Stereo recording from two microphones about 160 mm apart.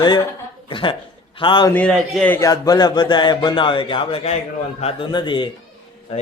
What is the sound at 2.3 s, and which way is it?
Speech, 20° left (ahead or behind).